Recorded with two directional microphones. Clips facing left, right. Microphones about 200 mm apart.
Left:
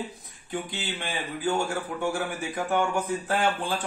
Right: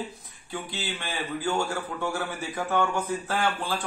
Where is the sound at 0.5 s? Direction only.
20° left (ahead or behind).